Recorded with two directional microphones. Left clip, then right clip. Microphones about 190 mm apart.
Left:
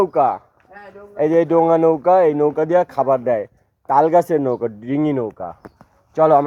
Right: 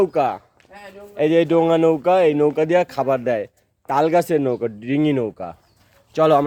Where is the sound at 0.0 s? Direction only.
5° right (ahead or behind).